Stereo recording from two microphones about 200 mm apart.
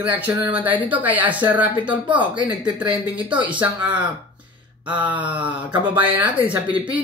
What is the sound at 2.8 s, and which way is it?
Speech, 25° right (ahead or behind).